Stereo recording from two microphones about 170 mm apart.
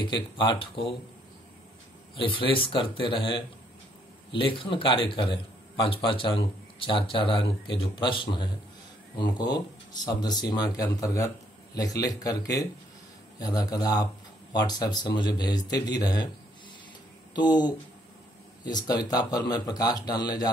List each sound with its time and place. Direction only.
0.0 s speech: 30° left (ahead or behind)
2.1 s a man's voice: 30° left (ahead or behind)
17.3 s speech: 25° left (ahead or behind)